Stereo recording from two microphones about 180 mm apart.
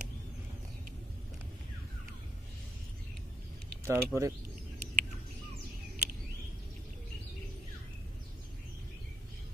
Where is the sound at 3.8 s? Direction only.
15° right (ahead or behind).